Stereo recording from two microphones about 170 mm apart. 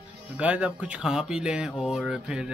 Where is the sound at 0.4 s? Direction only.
5° right (ahead or behind).